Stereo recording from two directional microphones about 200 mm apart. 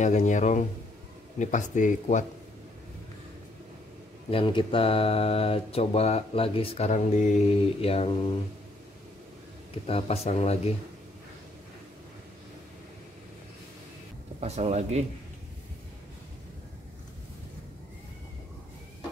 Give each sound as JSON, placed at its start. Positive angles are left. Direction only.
{"t": 0.0, "sound": "speech", "side_deg": 35}
{"t": 4.3, "sound": "speech", "side_deg": 25}
{"t": 9.8, "sound": "speech", "side_deg": 30}
{"t": 14.4, "sound": "speech", "side_deg": -35}